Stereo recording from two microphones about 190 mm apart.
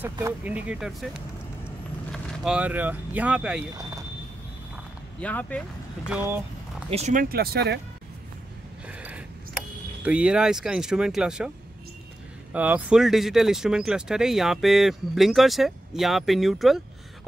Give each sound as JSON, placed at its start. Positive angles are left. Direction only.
{"t": 0.5, "sound": "speech", "side_deg": -5}
{"t": 5.2, "sound": "speech", "side_deg": 5}
{"t": 6.0, "sound": "speech", "side_deg": -10}
{"t": 6.9, "sound": "speech", "side_deg": -35}
{"t": 7.2, "sound": "speech", "side_deg": -55}
{"t": 8.8, "sound": "a sound", "side_deg": -5}
{"t": 10.0, "sound": "speech", "side_deg": -5}
{"t": 12.5, "sound": "speech", "side_deg": -10}